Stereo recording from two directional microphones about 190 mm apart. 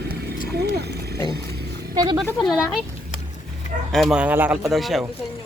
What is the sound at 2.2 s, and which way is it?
Speech, centre (ahead or behind).